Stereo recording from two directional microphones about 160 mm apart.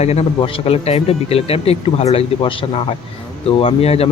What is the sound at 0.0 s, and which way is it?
Speech, 40° left (ahead or behind).